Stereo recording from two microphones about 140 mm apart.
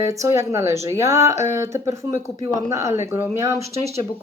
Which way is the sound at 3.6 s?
50° right (ahead or behind).